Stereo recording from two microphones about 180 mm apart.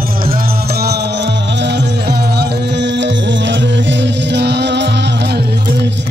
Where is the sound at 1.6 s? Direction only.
70° right (ahead or behind).